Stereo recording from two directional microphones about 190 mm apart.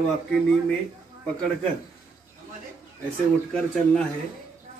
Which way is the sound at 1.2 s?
5° left (ahead or behind).